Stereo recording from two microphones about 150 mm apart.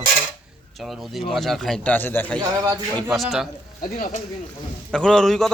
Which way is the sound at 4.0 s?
55° left (ahead or behind).